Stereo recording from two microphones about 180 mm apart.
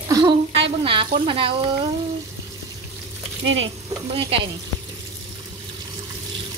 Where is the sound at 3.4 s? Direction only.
90° right.